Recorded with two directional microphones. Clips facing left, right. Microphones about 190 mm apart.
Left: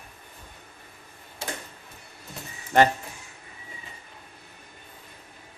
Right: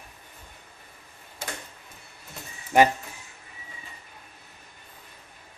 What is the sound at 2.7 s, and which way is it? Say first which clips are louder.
Speech: right 1 dB; 10° right (ahead or behind).